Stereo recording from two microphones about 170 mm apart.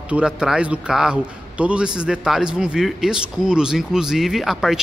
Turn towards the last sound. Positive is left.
turn(degrees=0)  # may be behind; listen again after turning